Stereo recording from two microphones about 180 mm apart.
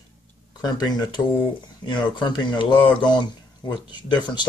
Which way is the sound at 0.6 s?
20° left (ahead or behind).